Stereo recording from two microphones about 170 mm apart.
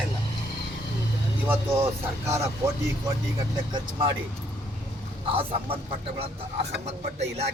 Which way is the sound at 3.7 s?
30° right (ahead or behind).